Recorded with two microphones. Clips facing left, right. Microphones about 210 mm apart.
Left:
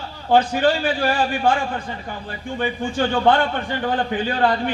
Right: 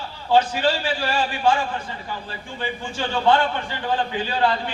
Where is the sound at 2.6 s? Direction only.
55° left (ahead or behind).